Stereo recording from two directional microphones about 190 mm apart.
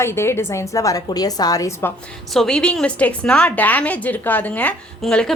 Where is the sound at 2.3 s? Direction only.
Centre (ahead or behind).